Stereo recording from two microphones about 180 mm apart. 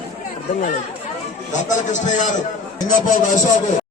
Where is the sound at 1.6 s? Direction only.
45° left (ahead or behind).